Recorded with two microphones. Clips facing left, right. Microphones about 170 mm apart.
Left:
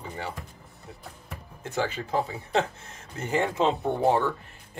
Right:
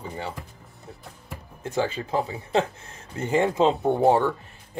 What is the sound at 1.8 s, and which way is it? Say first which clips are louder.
Speech: right 2 dB; 20° right (ahead or behind).